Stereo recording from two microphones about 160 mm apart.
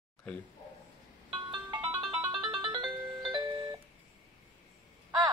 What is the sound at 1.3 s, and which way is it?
Music, 30° right (ahead or behind).